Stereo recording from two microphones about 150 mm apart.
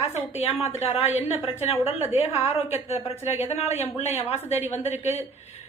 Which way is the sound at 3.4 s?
45° left (ahead or behind).